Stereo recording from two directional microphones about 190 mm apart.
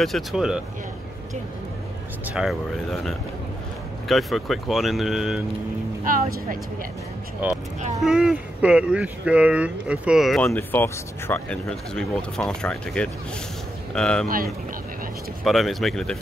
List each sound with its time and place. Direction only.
0.0 s speech: centre (ahead or behind)
2.2 s speech: 5° right (ahead or behind)
4.1 s speech: centre (ahead or behind)
6.0 s speech: 45° right (ahead or behind)
8.0 s speech: centre (ahead or behind)
10.5 s speech: 10° left (ahead or behind)
14.2 s speech: 50° right (ahead or behind)
15.4 s speech: centre (ahead or behind)